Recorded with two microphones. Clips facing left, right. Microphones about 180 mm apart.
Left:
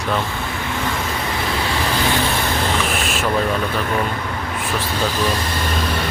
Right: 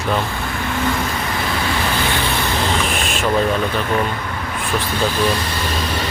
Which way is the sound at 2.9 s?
5° left (ahead or behind).